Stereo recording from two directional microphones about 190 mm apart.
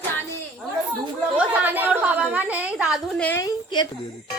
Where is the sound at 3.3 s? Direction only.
20° left (ahead or behind).